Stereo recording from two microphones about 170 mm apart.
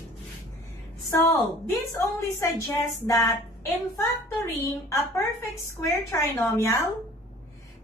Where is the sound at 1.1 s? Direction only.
15° left (ahead or behind).